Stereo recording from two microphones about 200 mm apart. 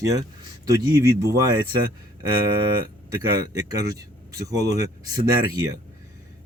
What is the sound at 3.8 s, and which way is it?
Speech, 15° right (ahead or behind).